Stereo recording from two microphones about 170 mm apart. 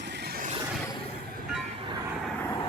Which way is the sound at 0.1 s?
70° right (ahead or behind).